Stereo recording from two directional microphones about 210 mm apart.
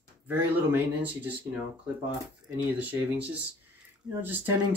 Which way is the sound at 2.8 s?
5° right (ahead or behind).